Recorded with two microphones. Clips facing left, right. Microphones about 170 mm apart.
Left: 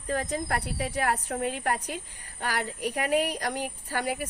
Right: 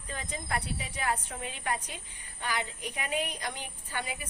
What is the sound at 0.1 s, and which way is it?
Speech, 65° left (ahead or behind).